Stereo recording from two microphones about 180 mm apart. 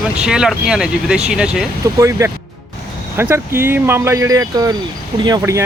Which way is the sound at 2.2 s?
15° right (ahead or behind).